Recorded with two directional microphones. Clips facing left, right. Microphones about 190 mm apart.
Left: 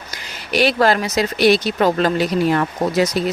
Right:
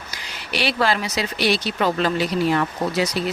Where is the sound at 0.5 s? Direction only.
45° left (ahead or behind).